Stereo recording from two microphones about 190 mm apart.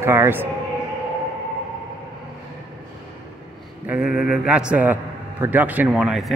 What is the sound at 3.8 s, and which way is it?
Mantra, 5° right (ahead or behind).